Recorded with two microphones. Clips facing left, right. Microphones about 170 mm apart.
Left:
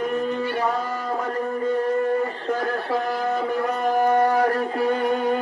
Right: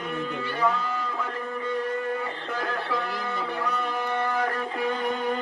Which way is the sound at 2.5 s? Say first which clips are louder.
Left 5 dB; 40° left (ahead or behind).